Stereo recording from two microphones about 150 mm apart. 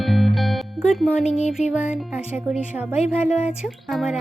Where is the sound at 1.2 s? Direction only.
45° left (ahead or behind).